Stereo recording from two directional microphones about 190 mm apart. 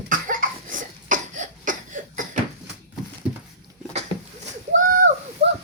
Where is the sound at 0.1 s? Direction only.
45° right (ahead or behind).